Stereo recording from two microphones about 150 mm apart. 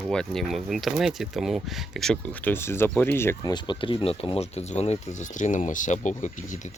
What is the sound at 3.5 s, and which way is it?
Speech, 30° left (ahead or behind).